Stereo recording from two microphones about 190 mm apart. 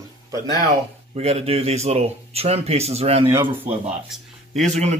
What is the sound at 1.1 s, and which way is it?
Speech, 30° right (ahead or behind).